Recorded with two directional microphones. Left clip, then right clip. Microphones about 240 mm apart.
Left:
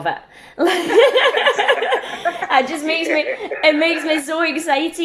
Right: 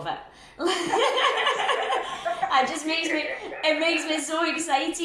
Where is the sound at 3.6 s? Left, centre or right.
Left.